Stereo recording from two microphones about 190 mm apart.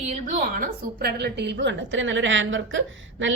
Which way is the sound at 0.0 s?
40° right (ahead or behind).